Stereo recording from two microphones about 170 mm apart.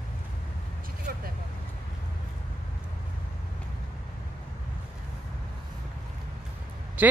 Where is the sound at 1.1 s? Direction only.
60° right (ahead or behind).